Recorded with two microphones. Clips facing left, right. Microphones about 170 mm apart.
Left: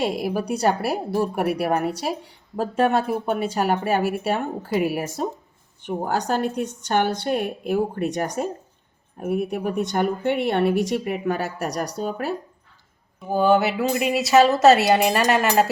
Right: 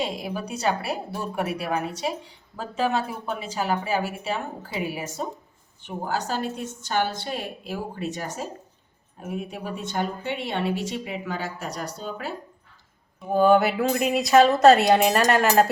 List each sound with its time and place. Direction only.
0.0 s a woman's voice: 65° left (ahead or behind)
13.2 s speech: centre (ahead or behind)